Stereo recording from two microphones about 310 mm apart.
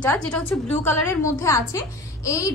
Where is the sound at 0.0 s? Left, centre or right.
Centre.